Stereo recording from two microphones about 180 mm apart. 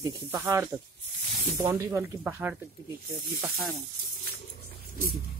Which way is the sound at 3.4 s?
Centre (ahead or behind).